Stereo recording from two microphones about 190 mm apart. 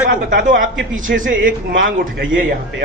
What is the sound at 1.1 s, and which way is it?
Speech, 55° right (ahead or behind).